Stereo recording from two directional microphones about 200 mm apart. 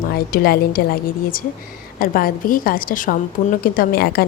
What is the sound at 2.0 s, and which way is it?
A woman's voice, 45° left (ahead or behind).